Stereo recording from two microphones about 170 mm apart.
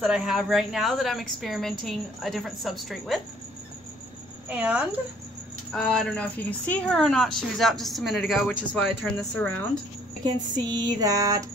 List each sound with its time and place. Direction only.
0.0 s a woman's voice: 5° right (ahead or behind)
4.5 s a woman's voice: 10° right (ahead or behind)
5.7 s a woman's voice: 5° left (ahead or behind)
10.2 s a sound: 25° right (ahead or behind)